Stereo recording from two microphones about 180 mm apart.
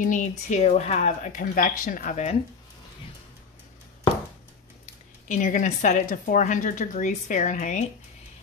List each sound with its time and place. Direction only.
0.0 s speech: 45° left (ahead or behind)
4.8 s speech: 45° left (ahead or behind)